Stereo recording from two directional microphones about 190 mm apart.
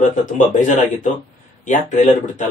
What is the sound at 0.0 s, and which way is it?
Speech, 40° left (ahead or behind).